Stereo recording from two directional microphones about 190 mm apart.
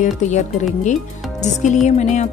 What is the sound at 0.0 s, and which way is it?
Speech, 40° left (ahead or behind).